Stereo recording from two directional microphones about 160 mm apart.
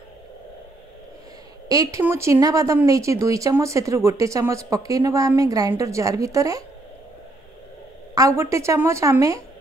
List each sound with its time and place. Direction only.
1.7 s speech: 20° right (ahead or behind)
8.1 s speech: 20° right (ahead or behind)